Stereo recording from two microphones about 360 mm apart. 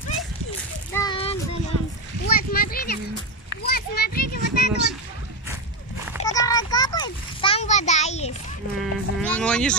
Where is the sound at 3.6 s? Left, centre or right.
Left.